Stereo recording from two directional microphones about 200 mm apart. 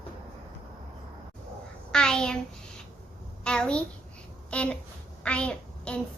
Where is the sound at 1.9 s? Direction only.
5° left (ahead or behind).